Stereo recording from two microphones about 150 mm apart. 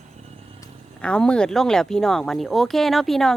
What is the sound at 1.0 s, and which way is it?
Speech, 5° left (ahead or behind).